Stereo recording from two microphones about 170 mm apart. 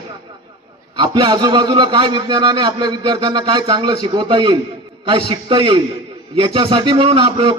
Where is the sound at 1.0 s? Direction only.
25° right (ahead or behind).